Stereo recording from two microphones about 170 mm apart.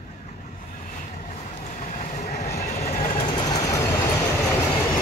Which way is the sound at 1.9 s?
45° left (ahead or behind).